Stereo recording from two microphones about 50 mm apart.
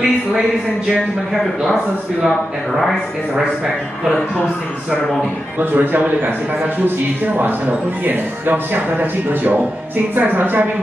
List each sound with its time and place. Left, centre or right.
2.2 s speech: centre
5.6 s speech: right
8.0 s speech: right